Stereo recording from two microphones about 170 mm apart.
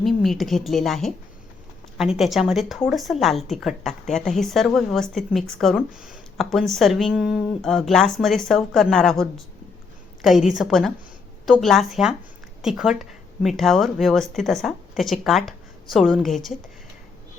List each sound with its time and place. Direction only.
0.0 s speech: centre (ahead or behind)
10.2 s speech: centre (ahead or behind)